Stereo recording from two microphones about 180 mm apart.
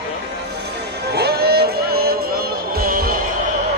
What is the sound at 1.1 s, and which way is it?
Music, 60° right (ahead or behind).